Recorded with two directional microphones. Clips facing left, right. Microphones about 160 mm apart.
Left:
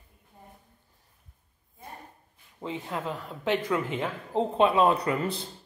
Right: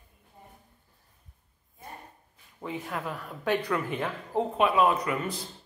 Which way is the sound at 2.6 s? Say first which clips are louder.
Left 1 dB; 20° left (ahead or behind).